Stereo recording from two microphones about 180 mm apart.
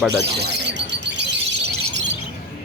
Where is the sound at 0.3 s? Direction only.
65° right (ahead or behind).